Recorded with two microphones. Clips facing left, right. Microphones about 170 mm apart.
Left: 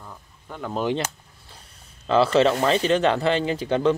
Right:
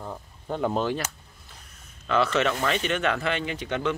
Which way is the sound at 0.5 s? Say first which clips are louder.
Right 6 dB; 25° right (ahead or behind).